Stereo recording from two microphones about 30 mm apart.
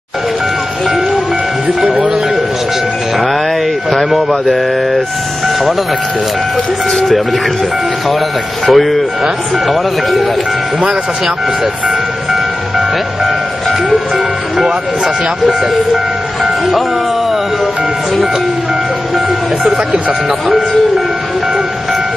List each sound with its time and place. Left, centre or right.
1.8 s speech: centre
3.9 s speech: centre
6.9 s speech: centre
8.6 s speech: centre
12.3 s music: centre